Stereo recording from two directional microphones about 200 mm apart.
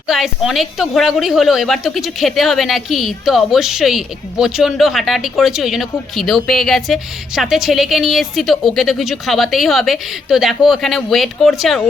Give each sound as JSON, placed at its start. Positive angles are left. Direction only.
{"t": 0.1, "sound": "a woman's voice", "side_deg": 0}